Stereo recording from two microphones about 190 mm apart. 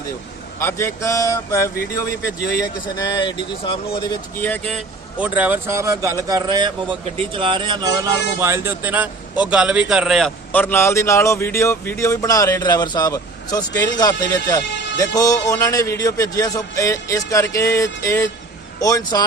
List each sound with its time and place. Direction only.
0.6 s a man's voice: 15° left (ahead or behind)
4.4 s a man's voice: 10° left (ahead or behind)
5.2 s a man's voice: 10° right (ahead or behind); by 19.2 s 20° left (ahead or behind)